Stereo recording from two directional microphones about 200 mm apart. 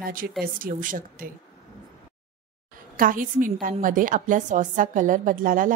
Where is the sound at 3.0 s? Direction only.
40° right (ahead or behind).